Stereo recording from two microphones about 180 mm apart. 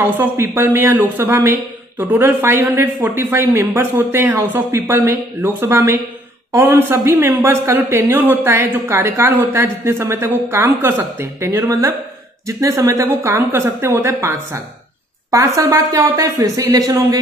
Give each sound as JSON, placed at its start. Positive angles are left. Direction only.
{"t": 0.2, "sound": "speech", "side_deg": -10}